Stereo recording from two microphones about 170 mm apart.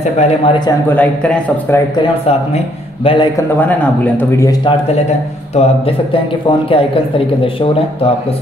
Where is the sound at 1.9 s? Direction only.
30° left (ahead or behind).